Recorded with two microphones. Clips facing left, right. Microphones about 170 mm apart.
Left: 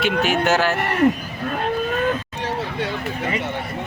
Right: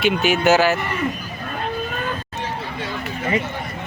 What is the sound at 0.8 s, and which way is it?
Speech, 65° left (ahead or behind).